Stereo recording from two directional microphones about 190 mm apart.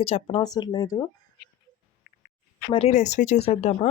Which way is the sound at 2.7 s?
30° left (ahead or behind).